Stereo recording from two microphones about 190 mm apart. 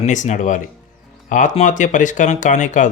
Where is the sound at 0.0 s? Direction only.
40° left (ahead or behind).